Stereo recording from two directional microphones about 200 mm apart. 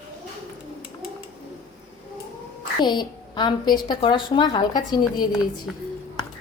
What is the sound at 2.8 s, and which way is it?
A woman's voice, 20° left (ahead or behind).